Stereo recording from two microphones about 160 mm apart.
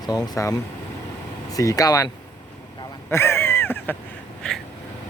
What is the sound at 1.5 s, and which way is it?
Speech, 20° left (ahead or behind).